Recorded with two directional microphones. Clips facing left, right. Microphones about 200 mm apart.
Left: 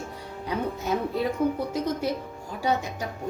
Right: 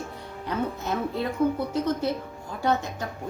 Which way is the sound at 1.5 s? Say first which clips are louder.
Right 1 dB; 10° left (ahead or behind).